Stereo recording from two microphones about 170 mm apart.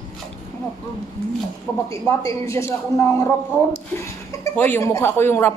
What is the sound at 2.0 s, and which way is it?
Speech, 15° left (ahead or behind).